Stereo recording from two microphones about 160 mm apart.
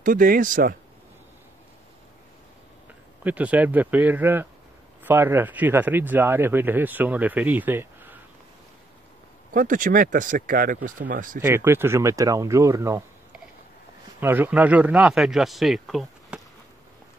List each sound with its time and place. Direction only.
0.0 s speech: 60° right (ahead or behind)
3.3 s speech: 10° right (ahead or behind)
9.5 s speech: 60° right (ahead or behind)
11.4 s speech: 15° right (ahead or behind)
14.2 s a man's voice: 10° right (ahead or behind)